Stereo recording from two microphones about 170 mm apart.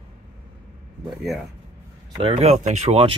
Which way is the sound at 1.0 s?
Centre (ahead or behind).